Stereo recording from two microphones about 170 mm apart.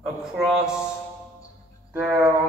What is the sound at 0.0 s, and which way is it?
Speech, 5° right (ahead or behind).